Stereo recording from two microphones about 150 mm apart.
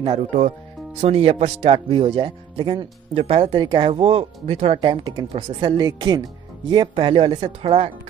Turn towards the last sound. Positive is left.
turn(degrees=-40)  # may be behind; listen again after turning